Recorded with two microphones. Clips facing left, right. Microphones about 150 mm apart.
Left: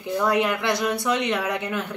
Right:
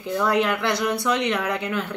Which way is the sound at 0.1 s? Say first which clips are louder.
Even; 20° left (ahead or behind).